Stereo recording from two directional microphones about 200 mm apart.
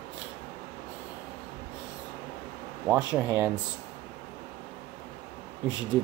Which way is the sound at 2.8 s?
5° right (ahead or behind).